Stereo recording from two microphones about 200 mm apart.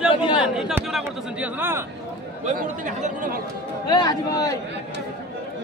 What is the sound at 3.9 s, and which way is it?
Speech, 20° left (ahead or behind).